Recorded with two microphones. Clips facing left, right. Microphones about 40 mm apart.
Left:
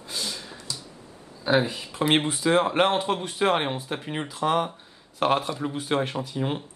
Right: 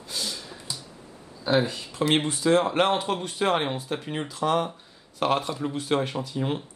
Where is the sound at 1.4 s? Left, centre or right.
Centre.